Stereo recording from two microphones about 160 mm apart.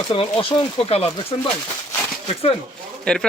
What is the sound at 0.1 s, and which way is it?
Speech, 35° left (ahead or behind).